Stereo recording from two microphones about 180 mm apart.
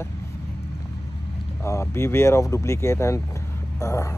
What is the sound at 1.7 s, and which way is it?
Speech, 15° left (ahead or behind).